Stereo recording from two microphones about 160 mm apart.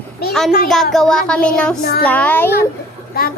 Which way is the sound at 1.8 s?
65° left (ahead or behind).